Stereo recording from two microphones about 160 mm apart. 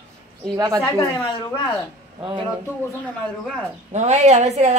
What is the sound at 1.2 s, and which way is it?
Speech, 30° left (ahead or behind).